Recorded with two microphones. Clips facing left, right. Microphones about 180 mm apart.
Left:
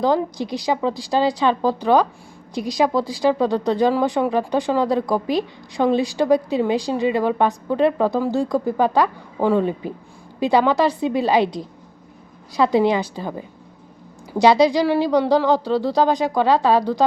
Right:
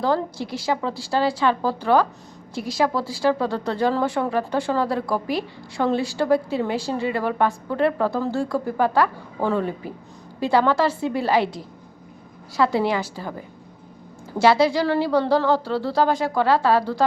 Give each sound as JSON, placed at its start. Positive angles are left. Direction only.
{"t": 0.0, "sound": "a woman's voice", "side_deg": 15}